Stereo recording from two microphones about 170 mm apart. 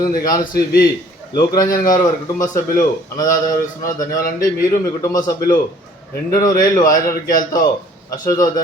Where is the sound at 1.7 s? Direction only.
55° left (ahead or behind).